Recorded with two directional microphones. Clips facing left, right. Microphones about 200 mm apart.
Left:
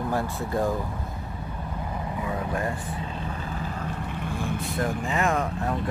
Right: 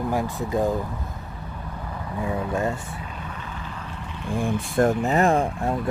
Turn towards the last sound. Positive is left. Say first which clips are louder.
# right 3 dB
turn(degrees=-30)  # may be behind; listen again after turning